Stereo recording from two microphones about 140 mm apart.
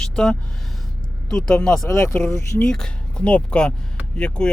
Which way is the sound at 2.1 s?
10° left (ahead or behind).